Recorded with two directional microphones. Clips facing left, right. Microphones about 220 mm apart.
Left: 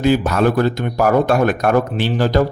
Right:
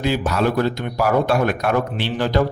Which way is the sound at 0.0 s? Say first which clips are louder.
Left 5 dB; 50° left (ahead or behind).